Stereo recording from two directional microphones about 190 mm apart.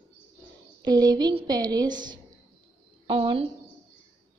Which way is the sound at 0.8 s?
20° right (ahead or behind).